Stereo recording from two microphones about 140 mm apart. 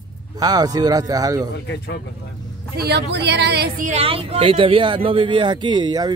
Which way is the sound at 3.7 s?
65° right (ahead or behind).